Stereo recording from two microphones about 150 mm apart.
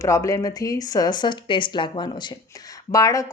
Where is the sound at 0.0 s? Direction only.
20° left (ahead or behind).